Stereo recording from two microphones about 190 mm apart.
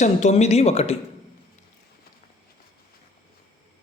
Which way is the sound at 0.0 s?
40° left (ahead or behind).